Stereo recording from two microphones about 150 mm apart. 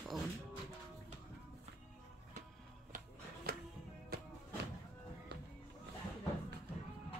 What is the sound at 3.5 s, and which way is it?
Music, 90° right.